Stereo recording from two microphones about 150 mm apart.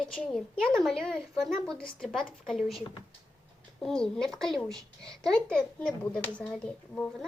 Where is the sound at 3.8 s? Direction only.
5° left (ahead or behind).